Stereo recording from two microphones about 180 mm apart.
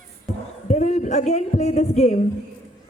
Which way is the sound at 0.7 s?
40° left (ahead or behind).